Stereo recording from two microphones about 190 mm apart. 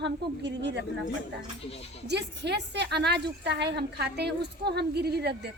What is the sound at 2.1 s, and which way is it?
A woman's voice, 60° right (ahead or behind).